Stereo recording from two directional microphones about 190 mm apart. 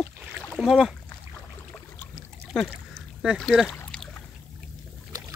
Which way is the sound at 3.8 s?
5° left (ahead or behind).